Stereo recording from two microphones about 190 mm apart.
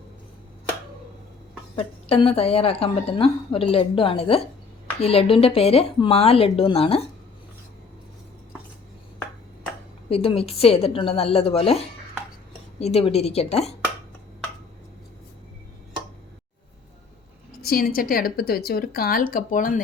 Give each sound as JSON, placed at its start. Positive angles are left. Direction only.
{"t": 1.7, "sound": "a woman's voice", "side_deg": 30}
{"t": 10.1, "sound": "speech", "side_deg": 30}
{"t": 12.8, "sound": "speech", "side_deg": 30}
{"t": 17.6, "sound": "a woman's voice", "side_deg": 50}